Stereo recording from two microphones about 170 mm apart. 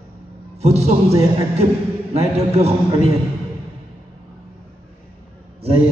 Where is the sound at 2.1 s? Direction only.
40° right (ahead or behind).